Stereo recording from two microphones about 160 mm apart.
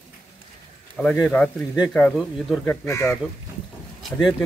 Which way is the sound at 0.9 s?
Centre (ahead or behind).